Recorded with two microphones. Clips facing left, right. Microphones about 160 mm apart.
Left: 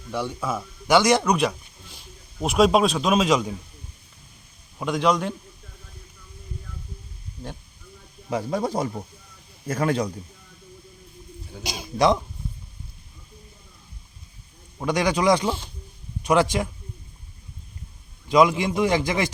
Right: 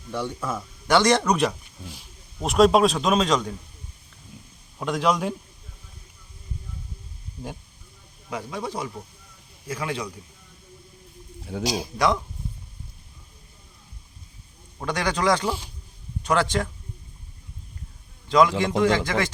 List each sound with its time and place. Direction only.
0.1 s speech: 10° left (ahead or behind)
4.8 s a man's voice: centre (ahead or behind)
8.3 s a man's voice: 40° left (ahead or behind)
11.6 s speech: 35° right (ahead or behind)
11.9 s speech: 25° left (ahead or behind)
14.8 s a man's voice: 15° left (ahead or behind)
18.3 s a man's voice: 15° left (ahead or behind)